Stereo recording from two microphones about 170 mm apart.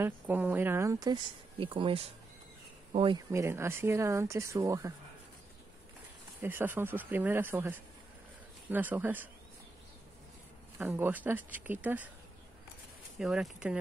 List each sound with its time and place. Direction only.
0.0 s speech: 10° right (ahead or behind); by 3.2 s 30° right (ahead or behind)
3.3 s speech: 15° right (ahead or behind)
6.4 s speech: 10° right (ahead or behind)
10.8 s speech: 10° right (ahead or behind)
13.2 s speech: 5° right (ahead or behind)